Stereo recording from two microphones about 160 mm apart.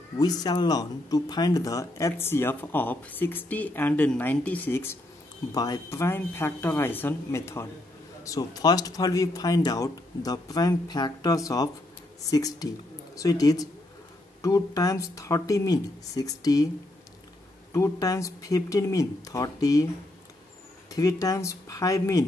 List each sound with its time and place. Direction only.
0.2 s speech: 25° left (ahead or behind)
17.7 s speech: 20° left (ahead or behind)
20.9 s speech: 20° left (ahead or behind)